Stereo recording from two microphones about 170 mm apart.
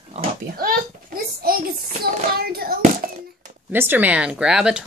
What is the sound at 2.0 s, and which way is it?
Child singing, 65° right (ahead or behind).